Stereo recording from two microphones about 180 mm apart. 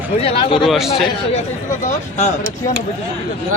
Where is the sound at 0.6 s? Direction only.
Centre (ahead or behind).